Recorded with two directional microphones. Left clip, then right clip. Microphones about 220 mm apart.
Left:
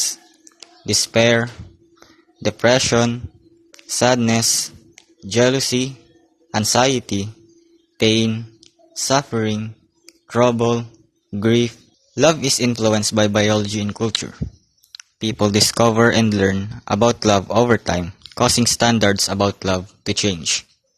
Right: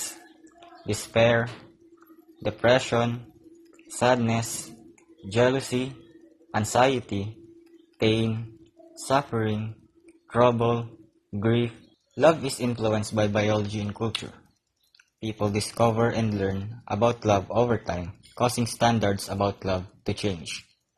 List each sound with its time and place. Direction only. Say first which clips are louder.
0.9 s speech: left 6 dB; 45° left (ahead or behind)